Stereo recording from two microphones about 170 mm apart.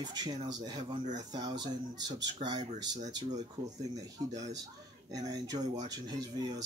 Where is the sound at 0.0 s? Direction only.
25° right (ahead or behind).